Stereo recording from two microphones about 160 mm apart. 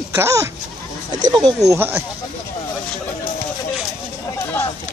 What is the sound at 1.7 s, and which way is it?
Speech, 15° right (ahead or behind).